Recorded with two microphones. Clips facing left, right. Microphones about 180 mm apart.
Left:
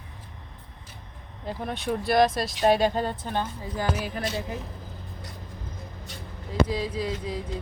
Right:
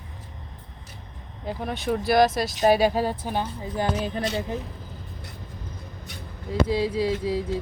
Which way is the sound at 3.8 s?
25° right (ahead or behind).